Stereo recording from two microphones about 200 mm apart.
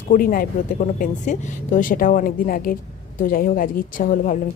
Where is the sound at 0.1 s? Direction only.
45° left (ahead or behind).